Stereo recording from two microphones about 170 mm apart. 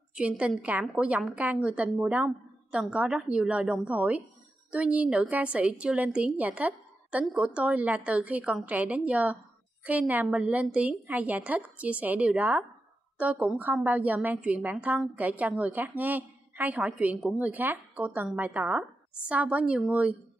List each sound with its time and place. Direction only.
0.1 s a woman's voice: 5° right (ahead or behind)